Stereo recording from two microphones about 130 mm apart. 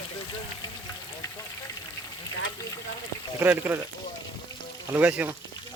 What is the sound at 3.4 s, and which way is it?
Speech, 15° right (ahead or behind).